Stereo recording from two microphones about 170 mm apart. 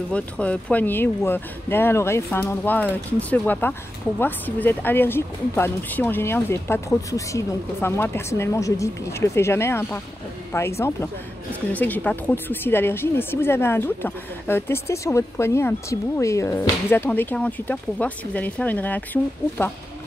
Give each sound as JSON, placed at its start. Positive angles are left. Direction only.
{"t": 0.1, "sound": "speech", "side_deg": 5}
{"t": 11.7, "sound": "speech", "side_deg": 10}